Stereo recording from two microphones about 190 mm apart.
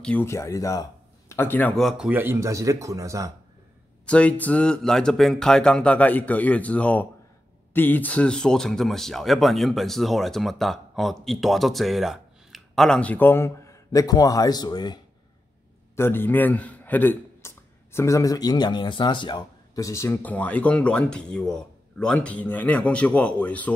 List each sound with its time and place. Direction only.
0.0 s a man's voice: 10° left (ahead or behind)
1.8 s speech: centre (ahead or behind)
4.0 s a man's voice: 5° left (ahead or behind); by 15.0 s 20° left (ahead or behind)
16.0 s a man's voice: 10° left (ahead or behind)